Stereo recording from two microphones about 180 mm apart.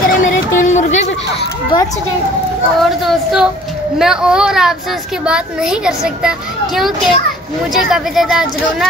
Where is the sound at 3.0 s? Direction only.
5° right (ahead or behind).